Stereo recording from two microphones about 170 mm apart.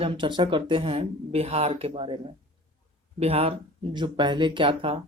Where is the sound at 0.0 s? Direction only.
30° right (ahead or behind).